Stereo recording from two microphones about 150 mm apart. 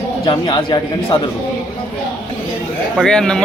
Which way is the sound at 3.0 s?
5° left (ahead or behind).